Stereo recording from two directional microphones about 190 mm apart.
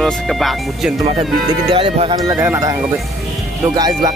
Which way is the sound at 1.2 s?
30° right (ahead or behind).